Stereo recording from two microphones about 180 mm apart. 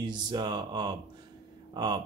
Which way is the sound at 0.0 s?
25° right (ahead or behind).